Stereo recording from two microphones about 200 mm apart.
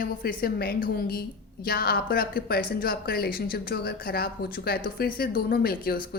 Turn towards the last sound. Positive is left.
turn(degrees=50)  # may be behind; listen again after turning